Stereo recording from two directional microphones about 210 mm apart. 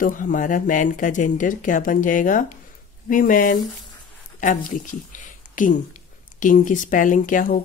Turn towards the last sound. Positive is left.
turn(degrees=40)  # may be behind; listen again after turning